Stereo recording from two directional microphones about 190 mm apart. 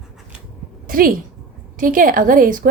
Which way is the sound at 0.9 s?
50° right (ahead or behind).